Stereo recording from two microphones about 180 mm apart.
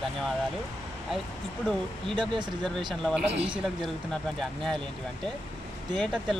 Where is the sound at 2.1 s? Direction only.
25° right (ahead or behind).